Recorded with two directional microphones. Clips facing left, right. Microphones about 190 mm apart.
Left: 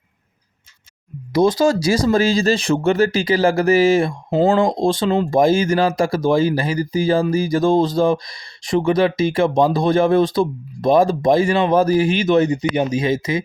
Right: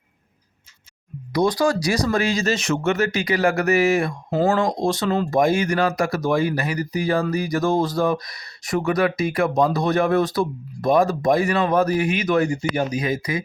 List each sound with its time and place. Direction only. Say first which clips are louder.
1.3 s speech: left 4 dB; 25° left (ahead or behind)